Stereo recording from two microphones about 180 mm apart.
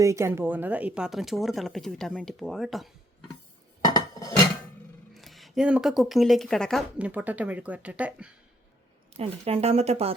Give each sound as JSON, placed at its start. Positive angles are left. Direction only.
{"t": 0.0, "sound": "speech", "side_deg": -15}
{"t": 3.8, "sound": "cutlery", "side_deg": 20}
{"t": 5.1, "sound": "speech", "side_deg": 0}
{"t": 9.1, "sound": "speech", "side_deg": -35}